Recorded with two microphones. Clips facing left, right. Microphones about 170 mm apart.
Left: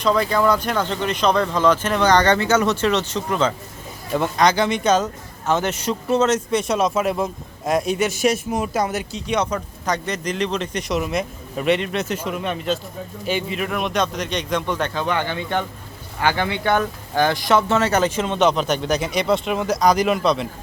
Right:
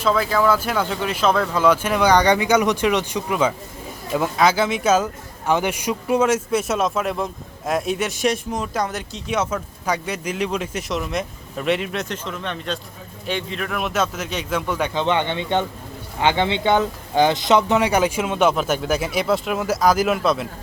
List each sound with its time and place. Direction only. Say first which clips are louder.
0.0 s speech: left 1 dB; centre (ahead or behind)
15.0 s speech: right 2 dB; 20° right (ahead or behind); by 20.5 s 5° right (ahead or behind)